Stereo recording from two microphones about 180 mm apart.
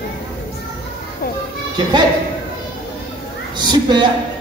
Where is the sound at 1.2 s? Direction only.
55° left (ahead or behind).